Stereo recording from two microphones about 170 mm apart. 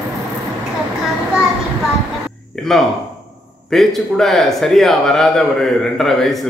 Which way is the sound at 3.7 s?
Centre (ahead or behind).